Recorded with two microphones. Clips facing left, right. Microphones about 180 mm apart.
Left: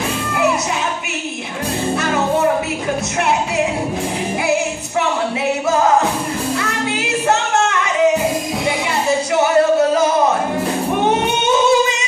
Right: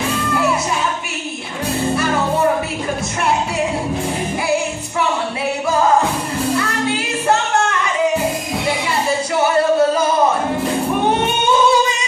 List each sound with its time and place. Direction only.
6.9 s music: 20° left (ahead or behind)
11.1 s singing: 20° left (ahead or behind)